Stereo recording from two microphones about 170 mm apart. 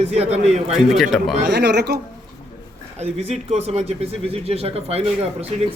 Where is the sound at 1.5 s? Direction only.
85° right.